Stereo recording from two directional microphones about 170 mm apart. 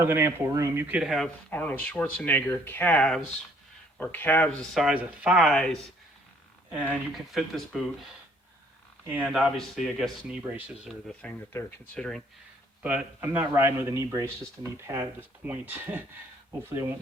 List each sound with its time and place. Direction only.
0.0 s speech: 15° right (ahead or behind); by 4.4 s 10° left (ahead or behind)
4.7 s speech: centre (ahead or behind)
6.8 s speech: centre (ahead or behind)
9.0 s speech: 5° right (ahead or behind)
12.8 s speech: 10° right (ahead or behind)